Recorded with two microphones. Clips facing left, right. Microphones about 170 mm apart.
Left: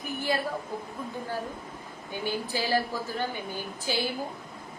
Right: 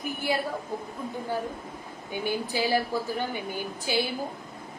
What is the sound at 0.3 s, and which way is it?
Speech, 10° right (ahead or behind).